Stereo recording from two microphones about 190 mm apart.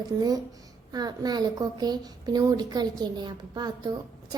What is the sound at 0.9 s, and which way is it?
A child's voice, 20° right (ahead or behind).